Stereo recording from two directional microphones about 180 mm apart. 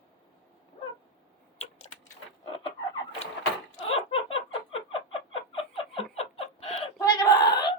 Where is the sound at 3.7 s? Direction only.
30° left (ahead or behind).